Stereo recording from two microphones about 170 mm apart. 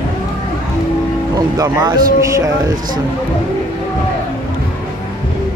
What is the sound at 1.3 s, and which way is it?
Speech, 20° right (ahead or behind).